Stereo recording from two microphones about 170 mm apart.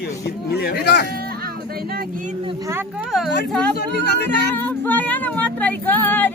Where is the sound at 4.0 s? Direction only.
75° left (ahead or behind).